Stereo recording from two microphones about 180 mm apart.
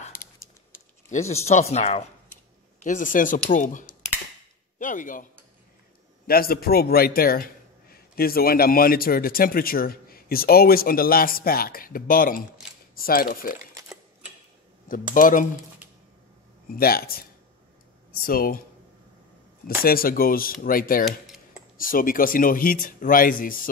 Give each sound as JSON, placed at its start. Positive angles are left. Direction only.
{"t": 1.3, "sound": "a man's voice", "side_deg": 35}
{"t": 15.1, "sound": "speech", "side_deg": 50}
{"t": 16.7, "sound": "a man's voice", "side_deg": 55}
{"t": 19.8, "sound": "a man's voice", "side_deg": 55}